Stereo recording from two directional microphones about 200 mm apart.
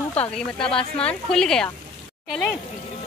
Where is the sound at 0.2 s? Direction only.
5° left (ahead or behind).